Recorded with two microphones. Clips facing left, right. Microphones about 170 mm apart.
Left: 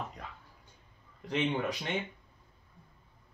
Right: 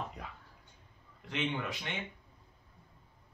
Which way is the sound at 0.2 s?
5° right (ahead or behind).